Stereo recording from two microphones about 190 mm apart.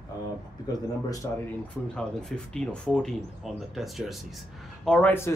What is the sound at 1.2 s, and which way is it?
A man's voice, 15° left (ahead or behind).